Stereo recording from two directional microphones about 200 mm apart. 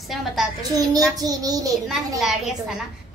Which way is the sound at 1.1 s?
20° right (ahead or behind).